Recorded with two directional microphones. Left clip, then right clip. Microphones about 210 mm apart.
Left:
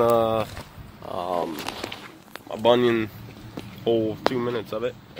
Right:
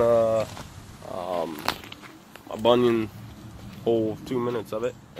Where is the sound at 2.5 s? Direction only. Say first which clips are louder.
Left 1 dB; 5° left (ahead or behind).